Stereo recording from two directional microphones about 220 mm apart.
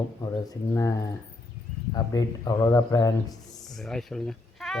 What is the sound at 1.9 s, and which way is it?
Speech, 15° left (ahead or behind).